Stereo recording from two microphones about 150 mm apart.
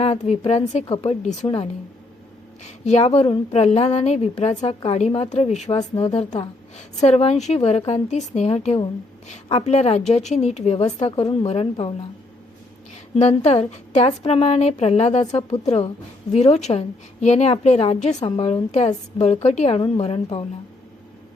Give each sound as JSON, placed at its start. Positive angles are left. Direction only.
{"t": 0.0, "sound": "a woman's voice", "side_deg": 45}
{"t": 2.6, "sound": "a woman's voice", "side_deg": 50}
{"t": 9.6, "sound": "a woman's voice", "side_deg": 45}
{"t": 13.1, "sound": "a woman's voice", "side_deg": 45}
{"t": 18.2, "sound": "a woman's voice", "side_deg": 35}